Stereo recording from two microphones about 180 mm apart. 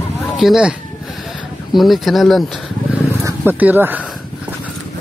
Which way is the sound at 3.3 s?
10° right (ahead or behind).